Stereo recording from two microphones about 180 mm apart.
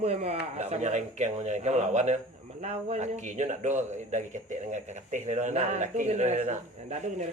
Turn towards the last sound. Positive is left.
turn(degrees=-40)  # may be behind; listen again after turning